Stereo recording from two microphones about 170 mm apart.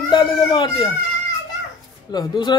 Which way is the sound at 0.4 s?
25° left (ahead or behind).